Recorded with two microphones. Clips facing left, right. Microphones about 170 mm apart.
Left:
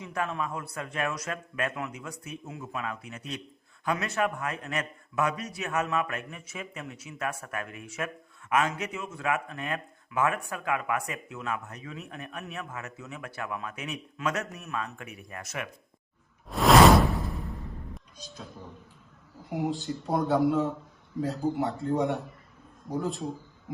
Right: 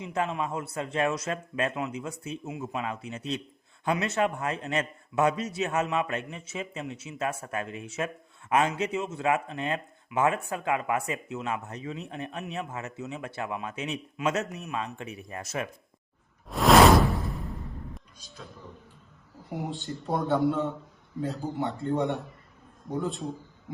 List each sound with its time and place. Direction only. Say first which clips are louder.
0.0 s a man's voice: right 2 dB; 20° right (ahead or behind)
16.5 s whoosh: even; centre (ahead or behind)
19.5 s a man's voice: left 4 dB; centre (ahead or behind)